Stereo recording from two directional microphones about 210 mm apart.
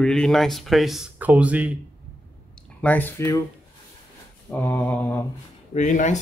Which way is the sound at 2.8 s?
10° left (ahead or behind).